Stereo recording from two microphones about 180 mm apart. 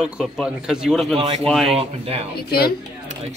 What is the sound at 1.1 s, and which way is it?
A man's voice, 25° right (ahead or behind).